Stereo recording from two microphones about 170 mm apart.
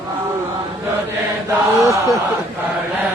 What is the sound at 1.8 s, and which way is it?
Speech, 15° right (ahead or behind).